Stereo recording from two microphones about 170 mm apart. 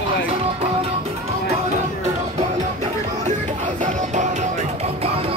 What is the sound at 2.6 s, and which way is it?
Music, 45° right (ahead or behind).